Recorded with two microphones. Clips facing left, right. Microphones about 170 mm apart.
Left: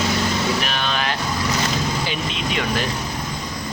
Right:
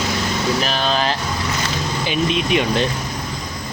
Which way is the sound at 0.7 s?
35° right (ahead or behind).